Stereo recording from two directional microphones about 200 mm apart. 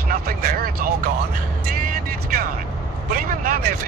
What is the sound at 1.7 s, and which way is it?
Vehicle, 45° right (ahead or behind).